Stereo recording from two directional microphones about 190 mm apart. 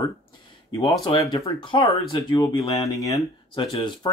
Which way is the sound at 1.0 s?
20° left (ahead or behind).